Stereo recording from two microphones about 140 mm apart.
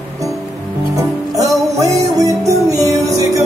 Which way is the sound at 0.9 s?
25° right (ahead or behind).